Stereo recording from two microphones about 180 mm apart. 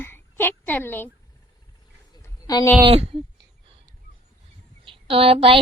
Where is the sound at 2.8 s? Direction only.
30° right (ahead or behind).